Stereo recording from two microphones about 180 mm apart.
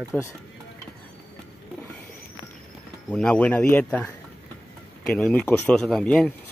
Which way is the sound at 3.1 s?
5° left (ahead or behind).